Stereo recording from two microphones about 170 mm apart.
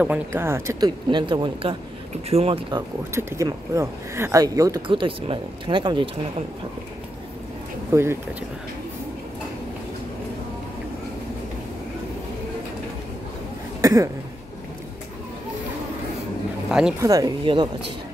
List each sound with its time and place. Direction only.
0.0 s speech: 10° right (ahead or behind); by 2.8 s 35° right (ahead or behind)
3.1 s speech: 15° right (ahead or behind)
7.9 s speech: 15° right (ahead or behind)
13.7 s a sound: 20° right (ahead or behind)
16.6 s speech: 5° right (ahead or behind)
17.0 s speech: 20° right (ahead or behind)